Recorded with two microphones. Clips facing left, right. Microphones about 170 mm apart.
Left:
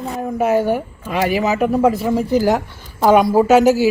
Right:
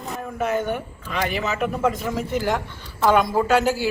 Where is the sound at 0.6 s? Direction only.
5° left (ahead or behind).